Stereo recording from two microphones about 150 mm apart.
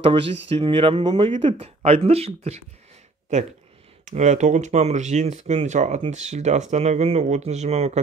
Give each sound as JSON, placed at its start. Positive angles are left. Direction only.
{"t": 0.0, "sound": "speech", "side_deg": -40}